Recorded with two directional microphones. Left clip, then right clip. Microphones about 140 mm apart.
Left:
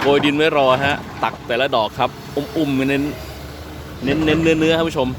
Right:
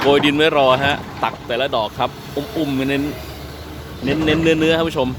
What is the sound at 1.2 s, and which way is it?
Speech, 30° left (ahead or behind).